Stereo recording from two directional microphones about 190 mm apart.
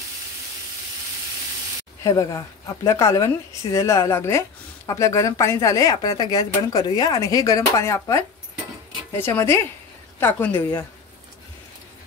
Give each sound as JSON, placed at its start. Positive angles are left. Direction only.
{"t": 2.0, "sound": "a woman's voice", "side_deg": 20}
{"t": 9.2, "sound": "a woman's voice", "side_deg": 15}